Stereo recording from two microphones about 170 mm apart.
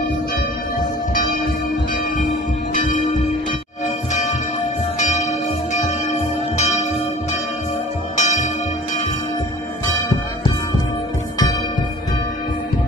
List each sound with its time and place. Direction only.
2.2 s church bell: 50° left (ahead or behind)
4.1 s music: 45° left (ahead or behind)
8.2 s music: 45° left (ahead or behind)
9.9 s music: 25° left (ahead or behind)